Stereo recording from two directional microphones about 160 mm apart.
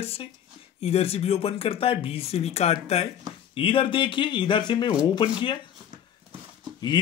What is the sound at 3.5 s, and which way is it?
Speech, 35° left (ahead or behind).